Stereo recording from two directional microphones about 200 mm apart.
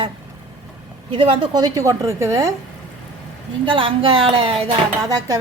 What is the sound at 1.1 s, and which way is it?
A woman's voice, 25° right (ahead or behind).